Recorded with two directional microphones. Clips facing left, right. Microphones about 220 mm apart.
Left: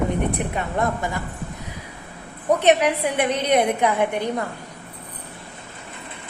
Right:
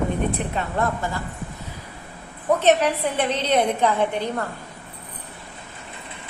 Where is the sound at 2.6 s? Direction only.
15° left (ahead or behind).